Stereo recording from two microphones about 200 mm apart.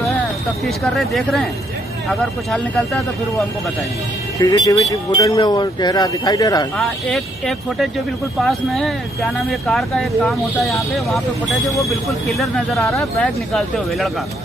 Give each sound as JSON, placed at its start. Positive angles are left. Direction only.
{"t": 0.7, "sound": "speech", "side_deg": 0}
{"t": 4.5, "sound": "speech", "side_deg": 20}
{"t": 6.8, "sound": "speech", "side_deg": 0}
{"t": 12.3, "sound": "speech", "side_deg": 0}